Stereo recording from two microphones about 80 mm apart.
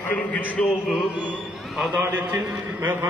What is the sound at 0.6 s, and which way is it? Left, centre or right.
Speech, centre.